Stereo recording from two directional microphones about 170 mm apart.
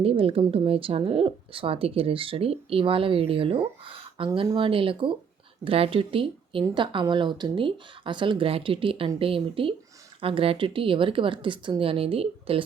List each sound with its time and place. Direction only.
0.0 s a woman's voice: 35° right (ahead or behind)